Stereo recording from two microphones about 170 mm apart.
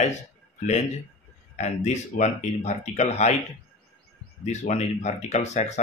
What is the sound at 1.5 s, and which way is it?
Speech, 40° left (ahead or behind).